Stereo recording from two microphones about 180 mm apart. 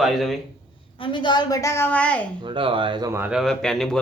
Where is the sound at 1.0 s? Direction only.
25° left (ahead or behind); by 2.2 s 5° left (ahead or behind).